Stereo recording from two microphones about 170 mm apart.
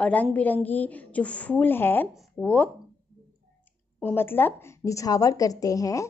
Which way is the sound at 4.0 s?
10° left (ahead or behind).